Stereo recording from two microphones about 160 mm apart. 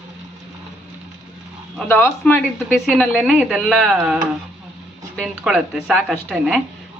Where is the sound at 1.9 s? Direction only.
10° left (ahead or behind).